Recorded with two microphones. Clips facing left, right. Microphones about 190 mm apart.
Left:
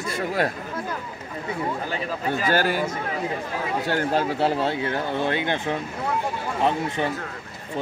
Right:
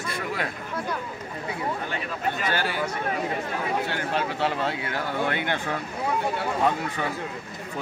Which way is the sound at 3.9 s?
40° left (ahead or behind).